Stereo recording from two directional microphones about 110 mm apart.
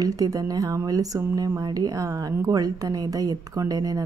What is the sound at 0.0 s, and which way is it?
A woman's voice, 35° right (ahead or behind).